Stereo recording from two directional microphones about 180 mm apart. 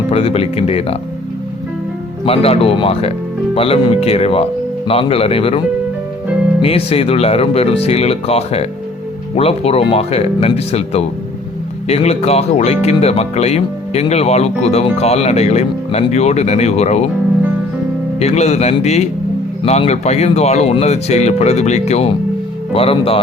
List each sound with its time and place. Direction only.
0.1 s speech: 35° left (ahead or behind)
2.2 s speech: 30° left (ahead or behind)
18.2 s speech: 35° left (ahead or behind)